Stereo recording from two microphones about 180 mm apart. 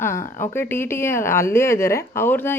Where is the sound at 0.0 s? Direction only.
15° left (ahead or behind).